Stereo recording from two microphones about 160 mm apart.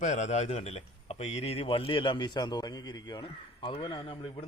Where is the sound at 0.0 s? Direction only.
45° left (ahead or behind).